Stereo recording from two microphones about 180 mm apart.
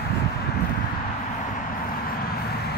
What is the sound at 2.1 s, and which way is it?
Vehicle, 60° left (ahead or behind).